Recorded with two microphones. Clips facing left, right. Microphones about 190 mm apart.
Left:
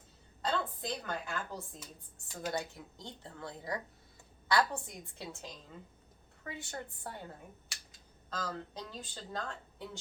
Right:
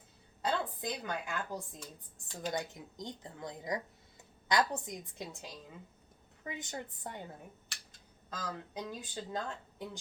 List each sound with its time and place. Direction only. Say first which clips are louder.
0.4 s a woman's voice: right 1 dB; 15° right (ahead or behind)
1.8 s speech: right 2 dB; 5° left (ahead or behind)
2.5 s speech: even; 15° right (ahead or behind)
6.5 s speech: right 1 dB; 15° right (ahead or behind)
8.3 s speech: left 2 dB; 10° right (ahead or behind)